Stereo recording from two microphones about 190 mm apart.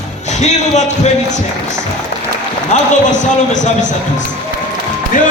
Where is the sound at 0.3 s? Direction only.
35° left (ahead or behind).